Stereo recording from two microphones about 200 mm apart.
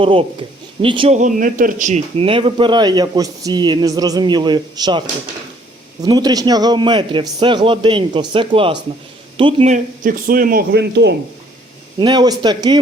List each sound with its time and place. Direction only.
0.0 s a man's voice: 25° right (ahead or behind); by 11.1 s 55° right (ahead or behind)
11.9 s speech: 20° right (ahead or behind)